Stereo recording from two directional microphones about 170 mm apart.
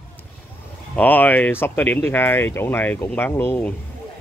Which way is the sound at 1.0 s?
10° left (ahead or behind).